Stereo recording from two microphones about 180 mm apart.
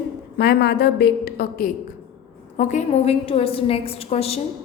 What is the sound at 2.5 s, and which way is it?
A woman's voice, 45° left (ahead or behind).